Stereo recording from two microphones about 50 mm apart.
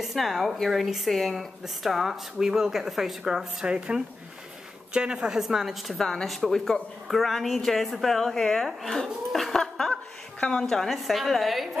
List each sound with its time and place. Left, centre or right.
0.0 s a woman's voice: centre
5.9 s a woman's voice: centre